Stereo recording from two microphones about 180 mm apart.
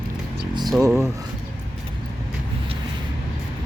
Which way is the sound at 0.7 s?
10° right (ahead or behind).